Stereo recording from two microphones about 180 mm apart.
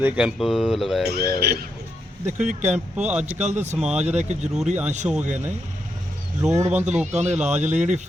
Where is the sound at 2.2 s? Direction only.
40° right (ahead or behind).